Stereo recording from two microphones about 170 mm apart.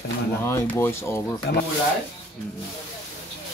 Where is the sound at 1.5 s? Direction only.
75° left (ahead or behind).